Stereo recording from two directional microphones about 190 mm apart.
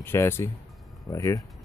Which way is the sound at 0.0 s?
10° left (ahead or behind).